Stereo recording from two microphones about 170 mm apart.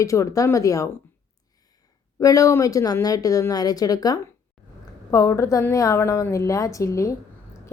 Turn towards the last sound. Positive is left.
turn(degrees=20)  # may be behind; listen again after turning